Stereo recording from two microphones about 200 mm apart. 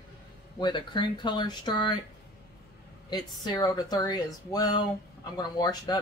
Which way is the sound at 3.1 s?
20° left (ahead or behind).